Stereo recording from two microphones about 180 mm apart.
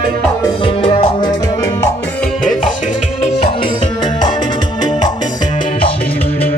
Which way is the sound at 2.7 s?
40° left (ahead or behind).